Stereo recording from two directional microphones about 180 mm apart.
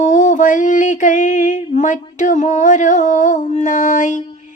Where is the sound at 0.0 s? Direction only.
45° left (ahead or behind).